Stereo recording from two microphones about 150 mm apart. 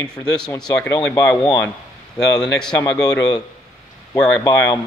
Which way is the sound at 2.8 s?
25° left (ahead or behind).